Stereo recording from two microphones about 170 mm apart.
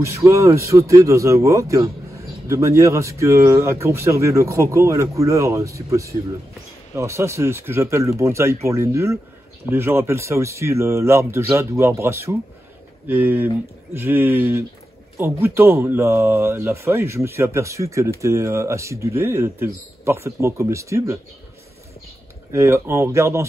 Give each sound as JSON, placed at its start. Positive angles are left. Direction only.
{"t": 0.0, "sound": "speech", "side_deg": -15}
{"t": 22.5, "sound": "speech", "side_deg": -15}